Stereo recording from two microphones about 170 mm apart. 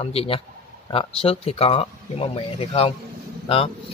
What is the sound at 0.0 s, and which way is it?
Speech, 35° left (ahead or behind).